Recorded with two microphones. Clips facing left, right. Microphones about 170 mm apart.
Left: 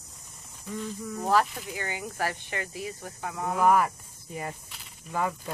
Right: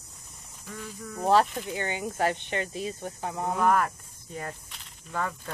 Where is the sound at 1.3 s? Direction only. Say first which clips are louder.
Right 3 dB; 25° right (ahead or behind).